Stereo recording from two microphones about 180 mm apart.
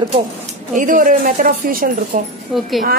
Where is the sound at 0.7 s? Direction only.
50° right (ahead or behind).